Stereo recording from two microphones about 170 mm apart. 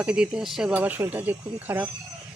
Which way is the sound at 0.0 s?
5° right (ahead or behind).